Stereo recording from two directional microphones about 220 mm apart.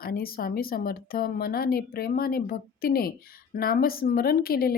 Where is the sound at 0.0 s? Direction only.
40° left (ahead or behind).